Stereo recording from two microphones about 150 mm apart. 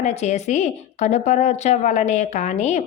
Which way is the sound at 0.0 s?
50° left (ahead or behind).